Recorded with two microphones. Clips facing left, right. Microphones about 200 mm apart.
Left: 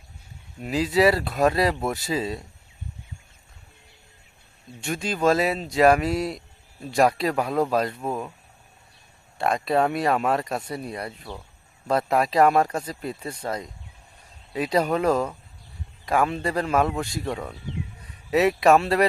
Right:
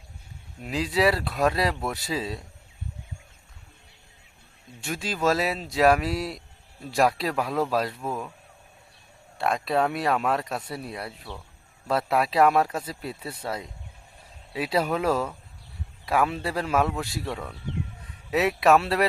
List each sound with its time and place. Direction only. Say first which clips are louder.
0.6 s speech: left 4 dB; centre (ahead or behind)
4.8 s speech: left 3 dB; centre (ahead or behind)
9.4 s speech: left 2 dB; centre (ahead or behind)
18.3 s speech: left 3 dB; centre (ahead or behind)